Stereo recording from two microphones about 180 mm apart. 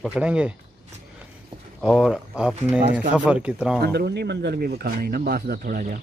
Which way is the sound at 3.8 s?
65° right (ahead or behind).